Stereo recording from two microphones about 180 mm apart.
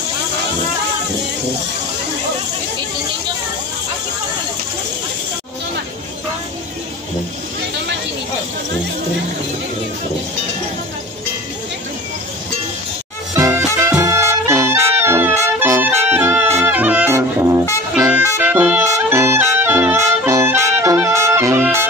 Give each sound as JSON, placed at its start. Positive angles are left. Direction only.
{"t": 13.3, "sound": "music", "side_deg": -15}
{"t": 13.7, "sound": "brass instrument", "side_deg": -15}
{"t": 18.0, "sound": "music", "side_deg": -10}